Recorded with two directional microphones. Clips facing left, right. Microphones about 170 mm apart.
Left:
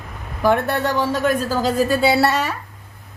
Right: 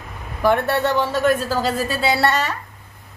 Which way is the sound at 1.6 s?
Centre (ahead or behind).